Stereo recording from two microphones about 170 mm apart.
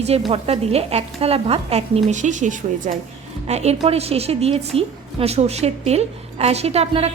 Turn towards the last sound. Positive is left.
turn(degrees=-35)  # may be behind; listen again after turning